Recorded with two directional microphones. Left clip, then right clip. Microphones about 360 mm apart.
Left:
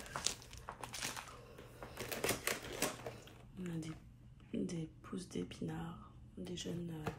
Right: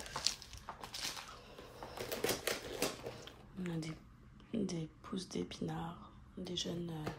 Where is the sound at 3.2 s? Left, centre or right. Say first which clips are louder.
Right 4 dB; centre.